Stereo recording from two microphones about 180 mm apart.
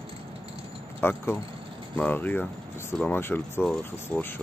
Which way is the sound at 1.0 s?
15° left (ahead or behind).